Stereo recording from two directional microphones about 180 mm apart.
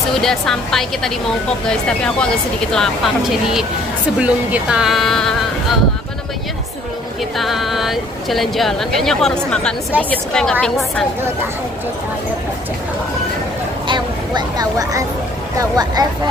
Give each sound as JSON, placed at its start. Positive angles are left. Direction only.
{"t": 0.2, "sound": "speech", "side_deg": 5}
{"t": 7.3, "sound": "speech", "side_deg": 0}
{"t": 13.8, "sound": "a sound", "side_deg": -25}
{"t": 15.5, "sound": "speech", "side_deg": -20}